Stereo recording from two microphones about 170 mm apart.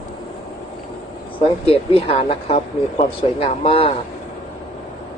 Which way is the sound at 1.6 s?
35° left (ahead or behind).